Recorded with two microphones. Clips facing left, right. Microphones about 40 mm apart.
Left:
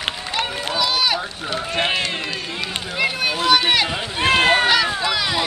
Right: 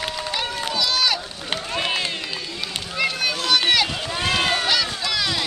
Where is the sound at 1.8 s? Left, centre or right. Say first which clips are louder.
Left 4 dB; left.